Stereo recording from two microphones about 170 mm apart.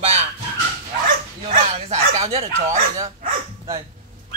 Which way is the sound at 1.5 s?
40° right (ahead or behind).